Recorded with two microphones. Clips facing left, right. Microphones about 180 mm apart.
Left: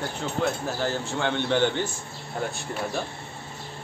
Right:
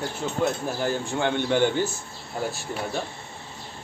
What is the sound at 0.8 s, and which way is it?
Speech, 15° right (ahead or behind).